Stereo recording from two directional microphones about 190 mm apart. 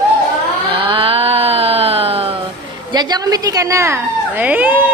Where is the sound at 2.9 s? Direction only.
20° right (ahead or behind).